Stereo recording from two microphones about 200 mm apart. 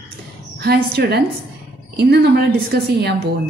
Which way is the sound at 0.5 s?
50° right (ahead or behind).